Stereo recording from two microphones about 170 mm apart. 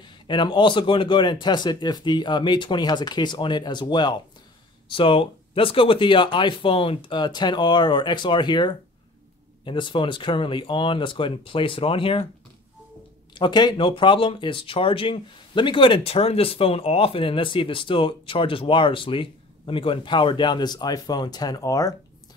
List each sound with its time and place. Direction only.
0.0 s speech: 25° left (ahead or behind)
13.3 s speech: 25° left (ahead or behind)